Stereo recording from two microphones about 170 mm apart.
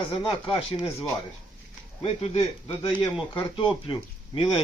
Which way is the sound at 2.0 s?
35° left (ahead or behind).